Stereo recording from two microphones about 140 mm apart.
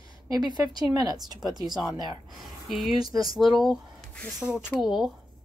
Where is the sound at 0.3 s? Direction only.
30° right (ahead or behind).